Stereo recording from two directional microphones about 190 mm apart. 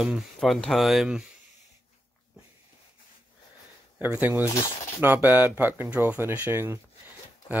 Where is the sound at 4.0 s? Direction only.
10° right (ahead or behind).